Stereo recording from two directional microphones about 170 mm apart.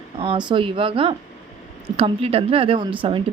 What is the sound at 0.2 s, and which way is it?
A woman's voice, 30° right (ahead or behind).